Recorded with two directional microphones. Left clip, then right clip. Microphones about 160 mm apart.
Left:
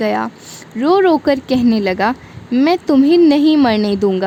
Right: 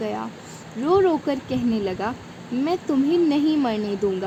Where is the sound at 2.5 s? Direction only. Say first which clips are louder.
Left 10 dB; 70° left (ahead or behind).